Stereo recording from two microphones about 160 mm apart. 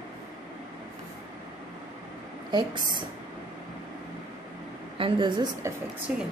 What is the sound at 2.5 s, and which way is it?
Speech, 30° right (ahead or behind).